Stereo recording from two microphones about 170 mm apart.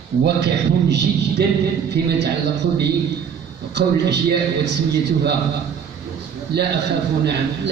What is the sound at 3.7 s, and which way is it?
A man's voice, 75° right (ahead or behind).